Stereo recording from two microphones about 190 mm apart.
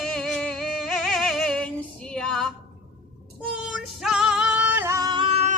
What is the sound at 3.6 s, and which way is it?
Music, centre (ahead or behind).